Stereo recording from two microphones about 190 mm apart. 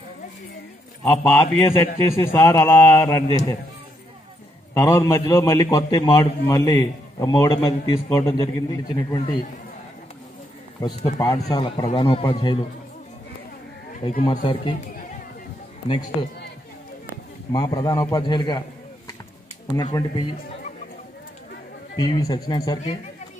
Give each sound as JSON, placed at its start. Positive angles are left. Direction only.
{"t": 1.0, "sound": "a man's voice", "side_deg": 5}
{"t": 4.7, "sound": "a man's voice", "side_deg": 15}
{"t": 10.8, "sound": "speech", "side_deg": 20}
{"t": 14.0, "sound": "speech", "side_deg": 30}
{"t": 17.5, "sound": "speech", "side_deg": 25}
{"t": 19.8, "sound": "speech", "side_deg": 20}
{"t": 22.0, "sound": "speech", "side_deg": 20}